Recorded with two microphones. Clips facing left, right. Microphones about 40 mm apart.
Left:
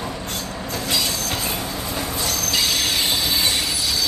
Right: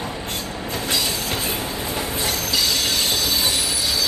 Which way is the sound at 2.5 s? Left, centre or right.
Centre.